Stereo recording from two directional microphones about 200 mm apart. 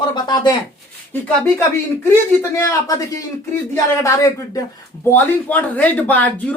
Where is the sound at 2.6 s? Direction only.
15° left (ahead or behind).